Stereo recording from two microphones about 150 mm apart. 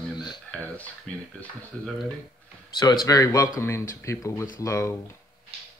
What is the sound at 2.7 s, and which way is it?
A man's voice, 25° left (ahead or behind).